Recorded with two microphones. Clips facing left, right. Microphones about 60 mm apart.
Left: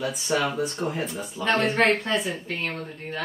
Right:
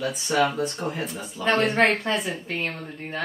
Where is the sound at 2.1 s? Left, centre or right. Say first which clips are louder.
Even; centre.